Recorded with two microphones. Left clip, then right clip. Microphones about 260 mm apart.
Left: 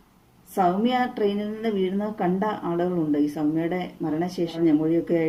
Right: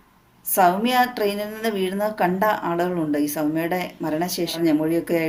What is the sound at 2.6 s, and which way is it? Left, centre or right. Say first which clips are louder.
Speech: right 2 dB; right.